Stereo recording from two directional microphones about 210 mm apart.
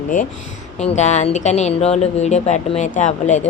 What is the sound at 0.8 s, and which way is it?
Speech, 30° left (ahead or behind).